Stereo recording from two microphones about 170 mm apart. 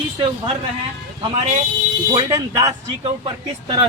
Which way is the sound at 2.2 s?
25° right (ahead or behind).